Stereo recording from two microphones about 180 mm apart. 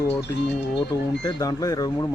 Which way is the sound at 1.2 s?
20° left (ahead or behind).